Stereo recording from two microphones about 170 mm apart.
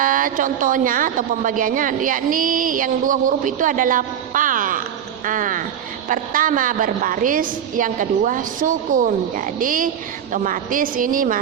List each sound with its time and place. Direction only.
0.0 s a woman's voice: 55° right (ahead or behind)